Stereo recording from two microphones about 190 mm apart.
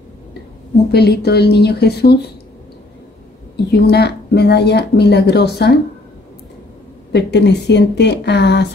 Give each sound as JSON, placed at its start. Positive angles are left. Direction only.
{"t": 0.9, "sound": "speech", "side_deg": 60}
{"t": 3.8, "sound": "speech", "side_deg": 60}
{"t": 7.1, "sound": "speech", "side_deg": 65}